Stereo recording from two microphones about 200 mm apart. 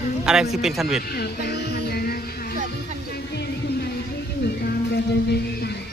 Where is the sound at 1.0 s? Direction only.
50° left (ahead or behind).